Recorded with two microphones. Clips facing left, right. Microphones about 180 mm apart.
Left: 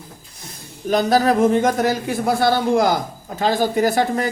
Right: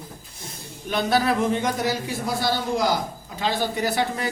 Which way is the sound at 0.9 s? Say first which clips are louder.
Left 6 dB; 40° left (ahead or behind).